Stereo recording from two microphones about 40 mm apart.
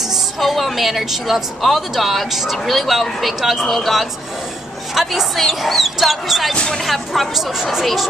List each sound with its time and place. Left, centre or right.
0.4 s speech: centre
3.6 s speech: centre
4.9 s speech: centre
6.5 s speech: centre
6.8 s speech: centre